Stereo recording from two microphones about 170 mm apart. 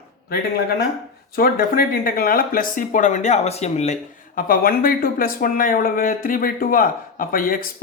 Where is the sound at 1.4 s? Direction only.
60° left (ahead or behind); by 3.9 s 40° left (ahead or behind).